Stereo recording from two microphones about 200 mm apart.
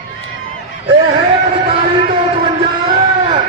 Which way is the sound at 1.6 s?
25° right (ahead or behind).